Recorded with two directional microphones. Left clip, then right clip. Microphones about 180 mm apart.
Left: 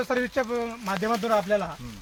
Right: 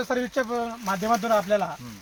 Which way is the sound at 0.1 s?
20° left (ahead or behind).